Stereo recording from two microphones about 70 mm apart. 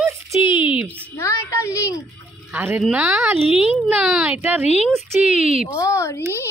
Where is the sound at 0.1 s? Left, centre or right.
Right.